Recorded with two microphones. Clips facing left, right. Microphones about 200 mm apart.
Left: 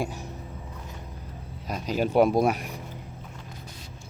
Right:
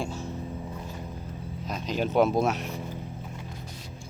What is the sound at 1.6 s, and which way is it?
Speech, 10° left (ahead or behind).